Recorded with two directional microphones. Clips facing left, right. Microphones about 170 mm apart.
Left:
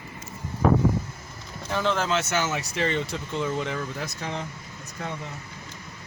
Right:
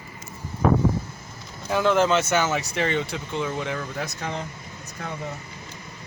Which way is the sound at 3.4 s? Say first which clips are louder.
Even; 55° right (ahead or behind).